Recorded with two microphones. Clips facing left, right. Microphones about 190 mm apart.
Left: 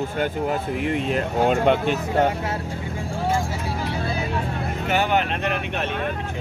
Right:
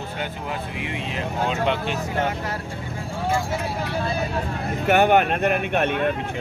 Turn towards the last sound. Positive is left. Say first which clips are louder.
# right 5 dB
turn(degrees=-50)  # may be behind; listen again after turning